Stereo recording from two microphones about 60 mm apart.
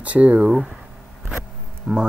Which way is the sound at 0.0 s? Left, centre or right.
Right.